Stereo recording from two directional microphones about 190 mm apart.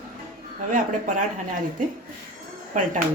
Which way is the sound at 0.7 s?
40° right (ahead or behind).